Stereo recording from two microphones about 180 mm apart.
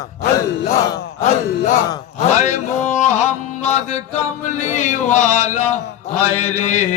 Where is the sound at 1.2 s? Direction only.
40° left (ahead or behind).